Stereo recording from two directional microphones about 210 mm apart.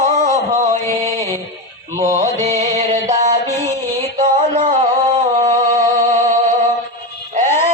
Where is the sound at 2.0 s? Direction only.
35° right (ahead or behind).